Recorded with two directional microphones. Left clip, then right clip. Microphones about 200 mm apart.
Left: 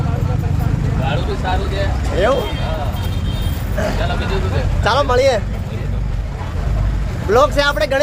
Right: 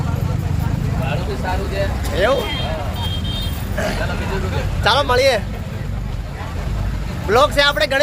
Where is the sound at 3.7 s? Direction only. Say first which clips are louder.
Left 2 dB; 5° left (ahead or behind).